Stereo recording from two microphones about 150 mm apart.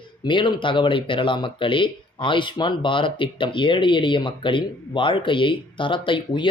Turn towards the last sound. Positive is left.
turn(degrees=35)  # may be behind; listen again after turning